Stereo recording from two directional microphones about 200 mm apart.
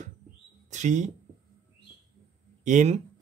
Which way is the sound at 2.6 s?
35° right (ahead or behind).